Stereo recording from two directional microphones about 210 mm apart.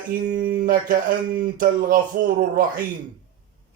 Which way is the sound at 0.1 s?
45° right (ahead or behind).